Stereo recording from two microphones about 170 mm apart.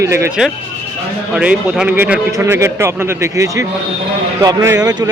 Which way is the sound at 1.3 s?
5° right (ahead or behind).